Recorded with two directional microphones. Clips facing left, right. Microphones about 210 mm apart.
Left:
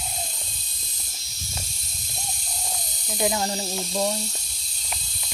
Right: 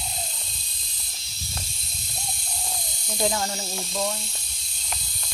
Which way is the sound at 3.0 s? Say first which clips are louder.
Left 1 dB; 10° left (ahead or behind).